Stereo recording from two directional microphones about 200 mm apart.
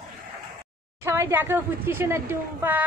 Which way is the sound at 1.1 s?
15° right (ahead or behind).